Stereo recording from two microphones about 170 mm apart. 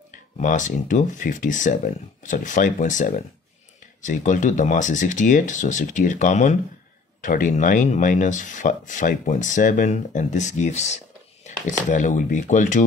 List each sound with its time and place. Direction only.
0.1 s speech: 50° left (ahead or behind)